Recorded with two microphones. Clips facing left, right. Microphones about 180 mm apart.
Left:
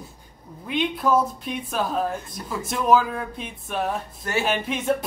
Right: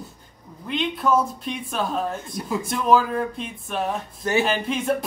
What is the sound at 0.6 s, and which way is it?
Speech, 5° left (ahead or behind).